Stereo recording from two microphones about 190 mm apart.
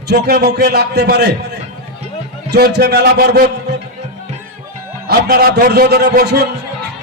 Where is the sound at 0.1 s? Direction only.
60° right (ahead or behind).